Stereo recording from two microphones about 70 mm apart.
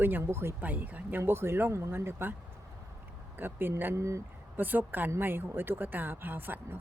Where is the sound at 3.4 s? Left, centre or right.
Right.